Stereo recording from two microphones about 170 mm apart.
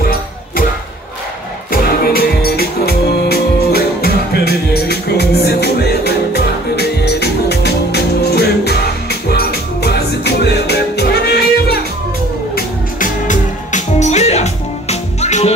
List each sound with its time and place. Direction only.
1.7 s music: 65° left (ahead or behind)
12.5 s music: 50° left (ahead or behind)